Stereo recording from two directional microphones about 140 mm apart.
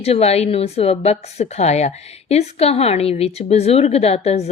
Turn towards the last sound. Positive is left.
turn(degrees=50)  # may be behind; listen again after turning